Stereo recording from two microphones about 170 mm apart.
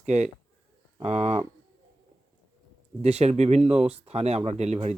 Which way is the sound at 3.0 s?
40° right (ahead or behind).